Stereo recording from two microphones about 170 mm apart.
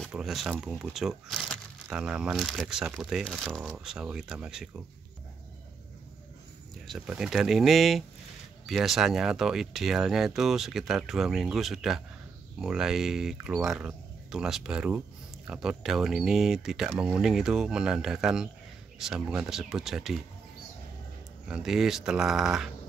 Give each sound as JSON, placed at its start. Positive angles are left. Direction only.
{"t": 0.0, "sound": "speech", "side_deg": 0}
{"t": 6.9, "sound": "speech", "side_deg": -5}
{"t": 21.5, "sound": "speech", "side_deg": -5}